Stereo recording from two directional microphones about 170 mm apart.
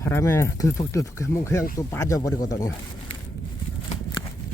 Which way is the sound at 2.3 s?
50° left (ahead or behind).